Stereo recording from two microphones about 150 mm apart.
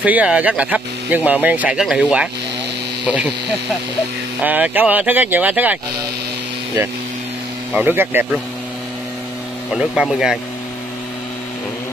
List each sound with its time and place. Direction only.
0.0 s speech: 10° right (ahead or behind)
4.4 s speech: 10° right (ahead or behind)
7.7 s speech: 15° right (ahead or behind)
9.7 s speech: centre (ahead or behind)